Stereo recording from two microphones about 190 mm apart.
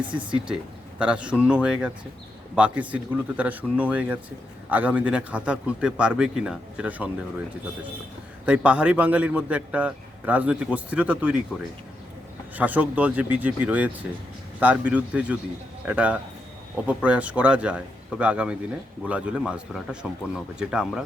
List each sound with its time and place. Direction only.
0.0 s speech: 25° right (ahead or behind)
0.4 s speech: 5° right (ahead or behind)
12.5 s speech: 10° right (ahead or behind)